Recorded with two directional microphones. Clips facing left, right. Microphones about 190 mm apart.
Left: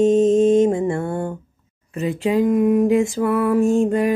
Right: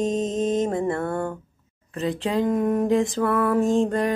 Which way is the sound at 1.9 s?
15° left (ahead or behind).